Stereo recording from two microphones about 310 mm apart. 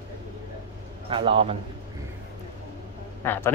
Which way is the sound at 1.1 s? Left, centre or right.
Centre.